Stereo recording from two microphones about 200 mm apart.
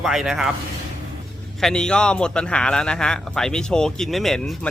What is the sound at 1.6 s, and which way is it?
A man's voice, 5° left (ahead or behind).